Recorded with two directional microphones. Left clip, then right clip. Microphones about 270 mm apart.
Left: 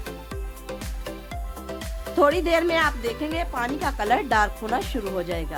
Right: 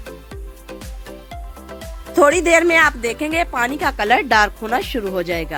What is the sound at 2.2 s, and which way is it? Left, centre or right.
A woman's voice, right.